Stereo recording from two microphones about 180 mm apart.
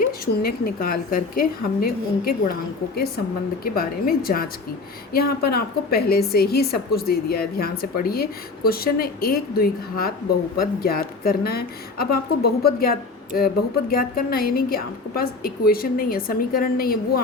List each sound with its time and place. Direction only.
0.0 s a woman's voice: 55° left (ahead or behind)
3.6 s a woman's voice: 55° left (ahead or behind)